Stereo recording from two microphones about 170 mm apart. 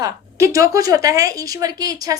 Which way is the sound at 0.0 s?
20° right (ahead or behind).